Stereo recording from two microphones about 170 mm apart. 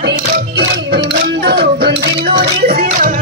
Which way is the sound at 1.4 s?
70° right (ahead or behind).